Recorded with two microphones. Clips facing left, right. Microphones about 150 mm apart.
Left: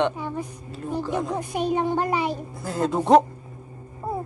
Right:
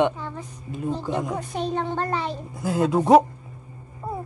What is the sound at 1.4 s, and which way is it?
A child's voice, 10° left (ahead or behind).